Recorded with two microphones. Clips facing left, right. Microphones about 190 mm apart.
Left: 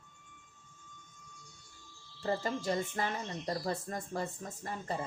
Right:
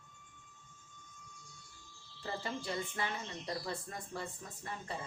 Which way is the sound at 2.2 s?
45° left (ahead or behind).